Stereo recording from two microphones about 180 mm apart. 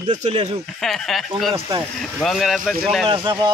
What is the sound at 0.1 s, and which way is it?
Speech, 40° right (ahead or behind).